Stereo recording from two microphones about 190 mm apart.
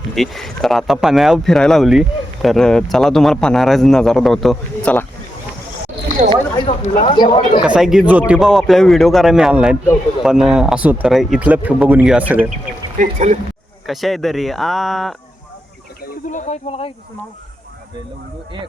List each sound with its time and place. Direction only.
0.2 s speech: centre (ahead or behind)
6.6 s speech: 25° left (ahead or behind)
7.6 s speech: 5° right (ahead or behind)
13.0 s speech: 40° right (ahead or behind)
13.8 s speech: centre (ahead or behind)
16.0 s speech: 40° left (ahead or behind)